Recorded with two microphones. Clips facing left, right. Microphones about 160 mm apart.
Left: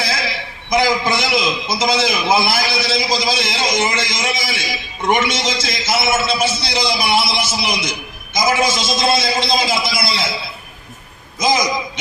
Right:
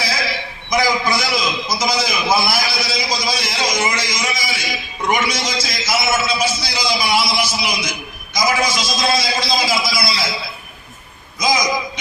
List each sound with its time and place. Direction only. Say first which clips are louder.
0.7 s a man's voice: left 2 dB; 25° left (ahead or behind)
11.3 s a man's voice: left 2 dB; 25° left (ahead or behind)